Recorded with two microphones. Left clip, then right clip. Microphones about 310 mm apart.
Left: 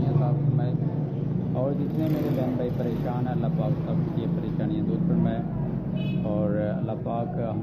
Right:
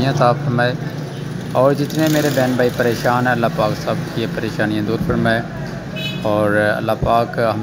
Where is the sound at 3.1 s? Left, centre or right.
Right.